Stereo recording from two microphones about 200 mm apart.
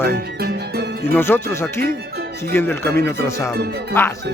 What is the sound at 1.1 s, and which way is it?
Speech, 10° left (ahead or behind).